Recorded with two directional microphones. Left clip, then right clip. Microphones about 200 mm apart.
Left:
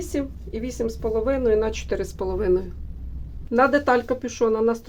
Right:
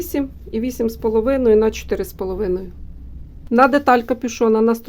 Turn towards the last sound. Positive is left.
turn(degrees=-55)  # may be behind; listen again after turning